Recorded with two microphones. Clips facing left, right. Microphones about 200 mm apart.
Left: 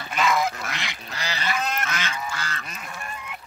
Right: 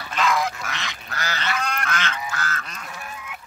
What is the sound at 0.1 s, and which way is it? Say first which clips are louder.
Goose: even; 5° left (ahead or behind).